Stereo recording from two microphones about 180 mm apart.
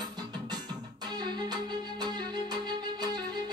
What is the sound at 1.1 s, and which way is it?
Music, 25° right (ahead or behind).